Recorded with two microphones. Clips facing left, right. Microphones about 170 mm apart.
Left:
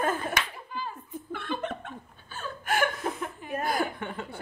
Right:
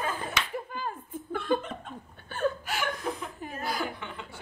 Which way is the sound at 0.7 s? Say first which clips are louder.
Right 1 dB; 50° right (ahead or behind).